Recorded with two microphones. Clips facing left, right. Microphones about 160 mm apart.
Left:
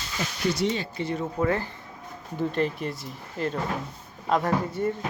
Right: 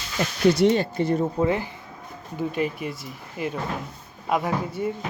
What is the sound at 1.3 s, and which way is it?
Speech, 20° right (ahead or behind).